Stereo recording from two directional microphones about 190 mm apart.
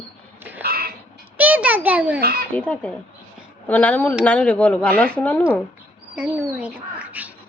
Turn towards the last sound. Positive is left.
turn(degrees=-5)  # may be behind; listen again after turning